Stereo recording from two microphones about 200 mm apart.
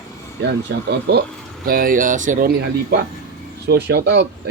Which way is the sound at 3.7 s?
55° right (ahead or behind).